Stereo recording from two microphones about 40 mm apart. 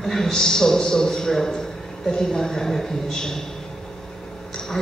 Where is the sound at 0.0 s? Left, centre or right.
Centre.